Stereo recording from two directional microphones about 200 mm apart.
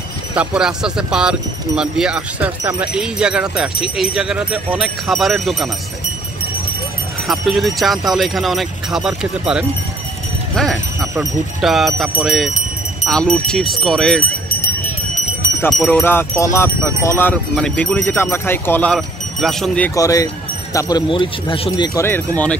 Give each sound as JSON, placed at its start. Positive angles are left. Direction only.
{"t": 0.3, "sound": "speech", "side_deg": -5}
{"t": 7.2, "sound": "speech", "side_deg": 0}
{"t": 15.7, "sound": "speech", "side_deg": 5}
{"t": 20.0, "sound": "speech", "side_deg": 15}